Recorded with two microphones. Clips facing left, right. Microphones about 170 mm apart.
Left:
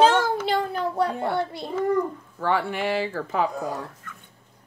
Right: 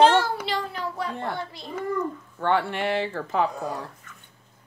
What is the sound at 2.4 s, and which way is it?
Speech, 5° left (ahead or behind).